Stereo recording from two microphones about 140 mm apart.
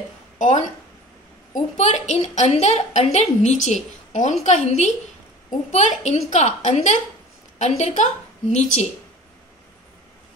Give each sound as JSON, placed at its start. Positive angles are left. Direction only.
{"t": 0.4, "sound": "a woman's voice", "side_deg": 55}